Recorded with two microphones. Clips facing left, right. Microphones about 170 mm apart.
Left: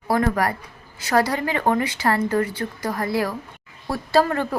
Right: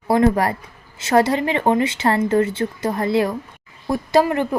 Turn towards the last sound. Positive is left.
turn(degrees=-15)  # may be behind; listen again after turning